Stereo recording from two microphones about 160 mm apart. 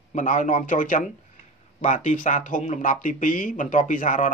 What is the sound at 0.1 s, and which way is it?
Speech, 55° left (ahead or behind).